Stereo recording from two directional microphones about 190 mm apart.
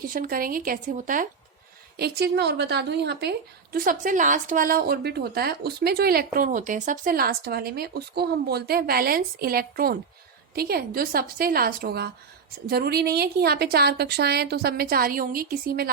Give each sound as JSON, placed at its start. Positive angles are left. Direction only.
{"t": 0.1, "sound": "a woman's voice", "side_deg": -50}
{"t": 2.0, "sound": "a woman's voice", "side_deg": -60}